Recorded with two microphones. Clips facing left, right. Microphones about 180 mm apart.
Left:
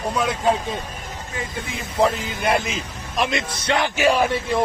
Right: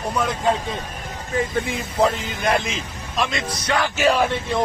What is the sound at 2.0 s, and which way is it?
Speech, 5° left (ahead or behind).